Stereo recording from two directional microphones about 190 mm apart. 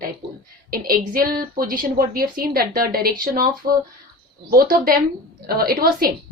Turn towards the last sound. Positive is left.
turn(degrees=-50)  # may be behind; listen again after turning